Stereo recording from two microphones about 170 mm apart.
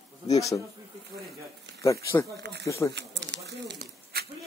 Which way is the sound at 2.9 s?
90° right.